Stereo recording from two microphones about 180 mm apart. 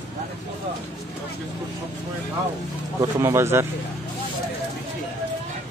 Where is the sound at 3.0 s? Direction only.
15° right (ahead or behind).